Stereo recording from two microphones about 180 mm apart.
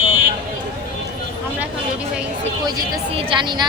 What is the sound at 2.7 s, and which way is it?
Speech, 25° right (ahead or behind).